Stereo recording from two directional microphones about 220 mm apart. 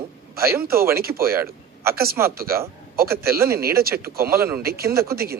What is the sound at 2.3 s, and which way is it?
Speech, 40° right (ahead or behind).